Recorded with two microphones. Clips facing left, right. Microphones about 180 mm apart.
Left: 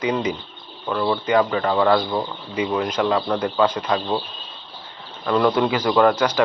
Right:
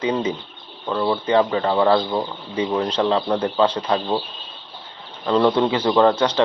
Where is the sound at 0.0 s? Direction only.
30° right (ahead or behind).